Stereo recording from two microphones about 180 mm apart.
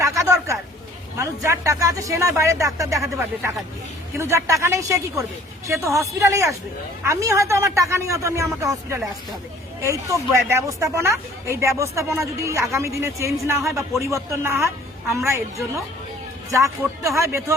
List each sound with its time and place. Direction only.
0.0 s a sound: 15° right (ahead or behind)
1.2 s speech: 15° right (ahead or behind)
9.8 s speech: 15° right (ahead or behind)